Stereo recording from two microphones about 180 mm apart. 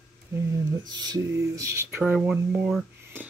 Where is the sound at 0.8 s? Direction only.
25° right (ahead or behind).